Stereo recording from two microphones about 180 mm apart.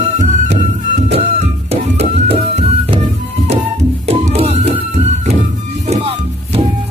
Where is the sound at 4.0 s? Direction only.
35° right (ahead or behind).